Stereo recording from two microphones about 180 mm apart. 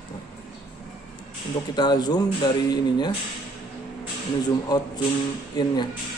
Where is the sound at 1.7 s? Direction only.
25° left (ahead or behind).